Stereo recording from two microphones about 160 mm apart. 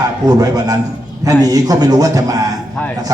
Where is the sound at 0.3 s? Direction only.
25° right (ahead or behind).